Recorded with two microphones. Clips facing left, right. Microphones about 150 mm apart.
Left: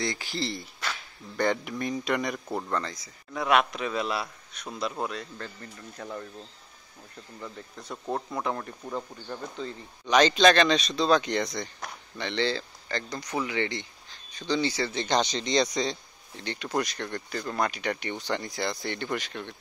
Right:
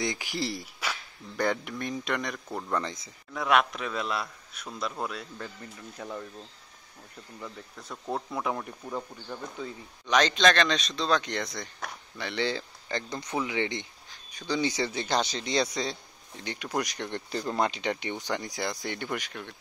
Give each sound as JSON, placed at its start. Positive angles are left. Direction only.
{"t": 0.0, "sound": "speech", "side_deg": -15}
{"t": 2.7, "sound": "speech", "side_deg": -20}
{"t": 3.3, "sound": "speech", "side_deg": 0}
{"t": 7.3, "sound": "speech", "side_deg": 0}
{"t": 15.0, "sound": "speech", "side_deg": -5}